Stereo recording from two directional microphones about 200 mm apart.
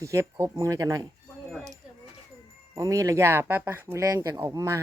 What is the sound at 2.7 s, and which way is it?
Speech, 15° right (ahead or behind).